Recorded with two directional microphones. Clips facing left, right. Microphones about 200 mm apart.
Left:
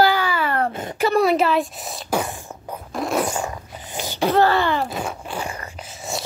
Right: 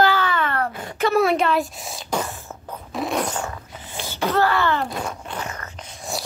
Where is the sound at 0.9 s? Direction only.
Centre (ahead or behind).